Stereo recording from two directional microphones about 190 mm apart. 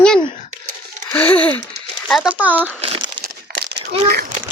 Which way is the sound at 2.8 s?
30° right (ahead or behind).